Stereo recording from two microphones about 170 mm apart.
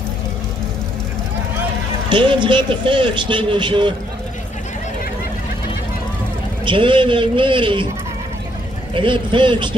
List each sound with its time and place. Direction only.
2.0 s a man's voice: 30° right (ahead or behind)
6.6 s a man's voice: 30° right (ahead or behind)
8.9 s a man's voice: 30° right (ahead or behind)